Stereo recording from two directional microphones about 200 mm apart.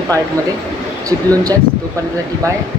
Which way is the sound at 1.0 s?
15° right (ahead or behind).